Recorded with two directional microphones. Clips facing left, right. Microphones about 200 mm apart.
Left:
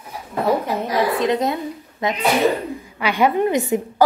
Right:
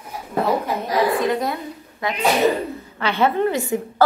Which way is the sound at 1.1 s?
20° left (ahead or behind).